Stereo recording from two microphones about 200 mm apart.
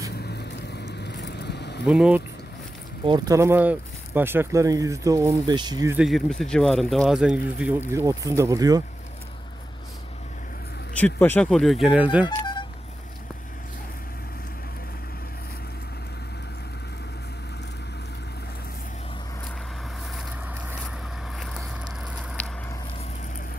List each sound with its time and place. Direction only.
0.1 s vehicle: 55° left (ahead or behind)
1.9 s speech: 5° right (ahead or behind)
3.1 s speech: 15° right (ahead or behind)
5.9 s speech: centre (ahead or behind); by 8.8 s 20° right (ahead or behind)
11.0 s speech: 10° left (ahead or behind); by 12.3 s 5° right (ahead or behind)
12.3 s telephone dialing: 20° left (ahead or behind)